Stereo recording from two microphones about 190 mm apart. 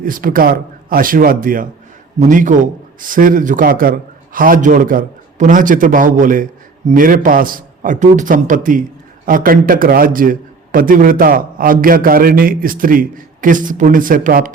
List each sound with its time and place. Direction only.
0.0 s a man's voice: 45° right (ahead or behind)